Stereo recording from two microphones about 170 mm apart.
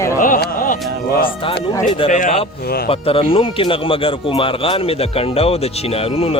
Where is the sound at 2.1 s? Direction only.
45° left (ahead or behind).